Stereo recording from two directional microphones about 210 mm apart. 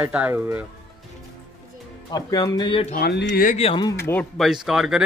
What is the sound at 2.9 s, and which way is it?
Speech, 50° left (ahead or behind).